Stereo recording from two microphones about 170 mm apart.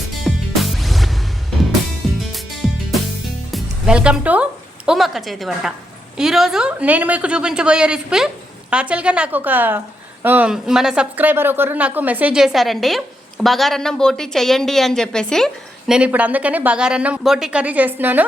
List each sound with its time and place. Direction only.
0.3 s music: centre (ahead or behind)
4.9 s a woman's voice: centre (ahead or behind)
15.9 s speech: 10° right (ahead or behind)